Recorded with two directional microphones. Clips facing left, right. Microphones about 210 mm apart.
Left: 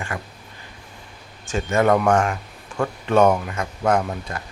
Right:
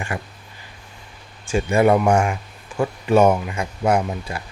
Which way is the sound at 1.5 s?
10° right (ahead or behind).